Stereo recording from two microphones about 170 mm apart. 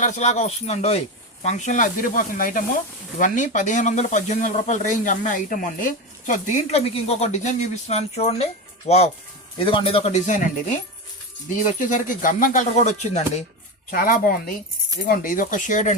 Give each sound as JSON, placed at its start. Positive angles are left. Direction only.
{"t": 0.0, "sound": "speech", "side_deg": 45}
{"t": 11.4, "sound": "speech", "side_deg": 50}
{"t": 13.9, "sound": "a woman's voice", "side_deg": 60}